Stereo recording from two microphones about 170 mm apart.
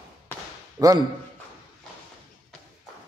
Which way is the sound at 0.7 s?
20° right (ahead or behind).